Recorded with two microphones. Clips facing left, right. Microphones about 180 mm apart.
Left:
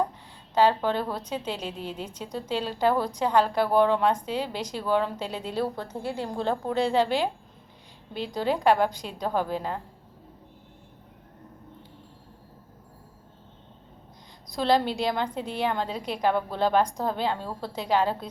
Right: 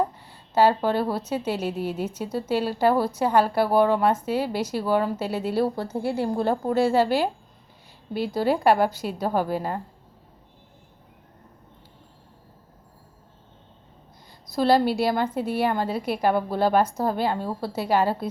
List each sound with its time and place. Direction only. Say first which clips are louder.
0.5 s a woman's voice: right 3 dB; 10° right (ahead or behind)
14.5 s a woman's voice: right 4 dB; 5° right (ahead or behind)